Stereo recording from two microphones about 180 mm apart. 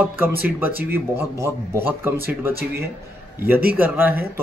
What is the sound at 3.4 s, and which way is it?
Speech, 10° right (ahead or behind).